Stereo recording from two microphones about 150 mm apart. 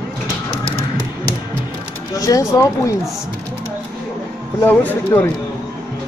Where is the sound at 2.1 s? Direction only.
25° left (ahead or behind).